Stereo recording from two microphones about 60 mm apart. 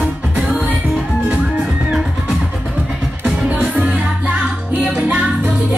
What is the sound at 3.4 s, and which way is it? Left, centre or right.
Music, right.